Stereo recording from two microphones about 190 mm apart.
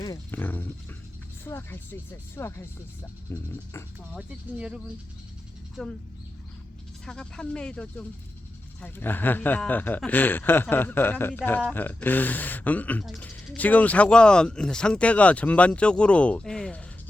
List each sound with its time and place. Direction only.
0.0 s speech: 15° left (ahead or behind)
4.1 s speech: 5° right (ahead or behind)
7.0 s speech: 5° left (ahead or behind)